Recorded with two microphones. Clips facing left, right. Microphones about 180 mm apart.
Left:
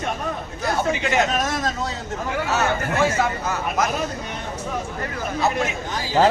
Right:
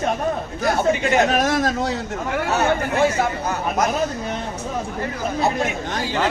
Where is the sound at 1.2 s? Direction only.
65° right (ahead or behind).